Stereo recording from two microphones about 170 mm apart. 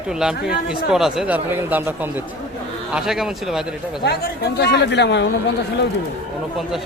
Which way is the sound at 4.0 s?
75° left (ahead or behind).